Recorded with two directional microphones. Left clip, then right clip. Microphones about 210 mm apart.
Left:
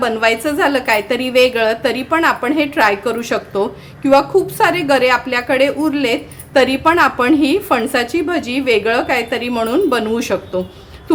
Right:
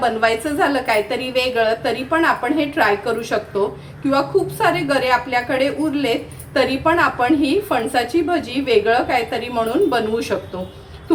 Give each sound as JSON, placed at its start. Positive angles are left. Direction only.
{"t": 0.0, "sound": "a woman's voice", "side_deg": 40}